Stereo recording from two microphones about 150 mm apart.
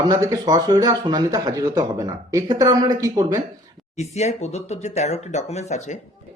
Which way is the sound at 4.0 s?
50° left (ahead or behind).